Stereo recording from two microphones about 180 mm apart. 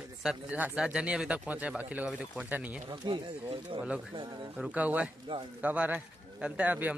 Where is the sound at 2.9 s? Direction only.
25° right (ahead or behind).